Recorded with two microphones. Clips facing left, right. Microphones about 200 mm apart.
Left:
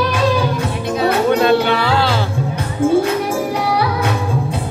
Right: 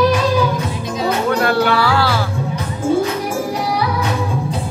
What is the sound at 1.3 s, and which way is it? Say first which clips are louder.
Music: left 2 dB; 20° left (ahead or behind).